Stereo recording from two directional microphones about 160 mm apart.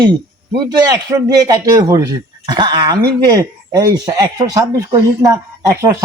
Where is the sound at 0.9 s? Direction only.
25° right (ahead or behind).